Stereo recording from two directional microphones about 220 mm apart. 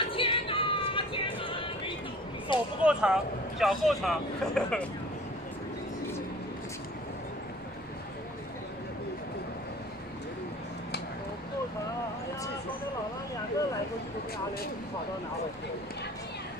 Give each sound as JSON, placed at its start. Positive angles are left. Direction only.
{"t": 0.0, "sound": "music", "side_deg": 25}
{"t": 2.8, "sound": "speech", "side_deg": -5}